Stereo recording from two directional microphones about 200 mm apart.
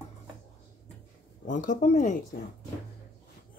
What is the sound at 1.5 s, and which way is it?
Speech, 40° left (ahead or behind).